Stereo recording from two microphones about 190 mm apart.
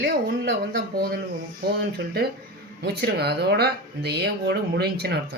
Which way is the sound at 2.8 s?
55° right (ahead or behind).